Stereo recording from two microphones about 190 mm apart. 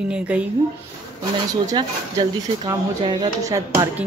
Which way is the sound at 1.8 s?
25° right (ahead or behind).